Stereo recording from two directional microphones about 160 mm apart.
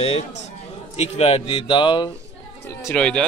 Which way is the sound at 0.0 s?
40° left (ahead or behind).